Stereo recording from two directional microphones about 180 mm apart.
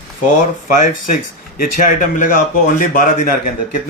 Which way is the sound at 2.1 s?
50° left (ahead or behind).